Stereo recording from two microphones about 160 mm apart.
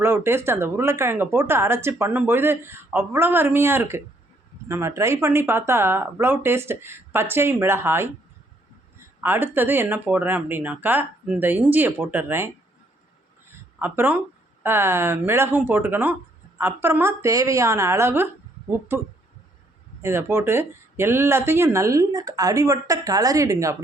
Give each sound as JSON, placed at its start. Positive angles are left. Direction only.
{"t": 0.0, "sound": "speech", "side_deg": -15}
{"t": 9.2, "sound": "speech", "side_deg": -15}
{"t": 13.7, "sound": "speech", "side_deg": -10}